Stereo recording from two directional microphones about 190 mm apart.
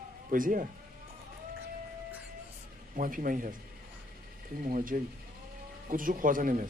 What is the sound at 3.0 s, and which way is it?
Speech, 45° right (ahead or behind).